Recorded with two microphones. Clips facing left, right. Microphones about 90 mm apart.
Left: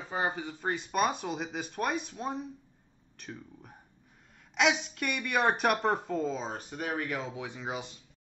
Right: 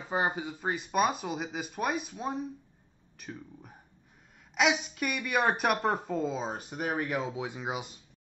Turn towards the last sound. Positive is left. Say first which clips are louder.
# right 2 dB
turn(degrees=-15)  # may be behind; listen again after turning